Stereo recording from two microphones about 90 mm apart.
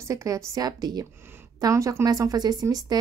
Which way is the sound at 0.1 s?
40° right (ahead or behind).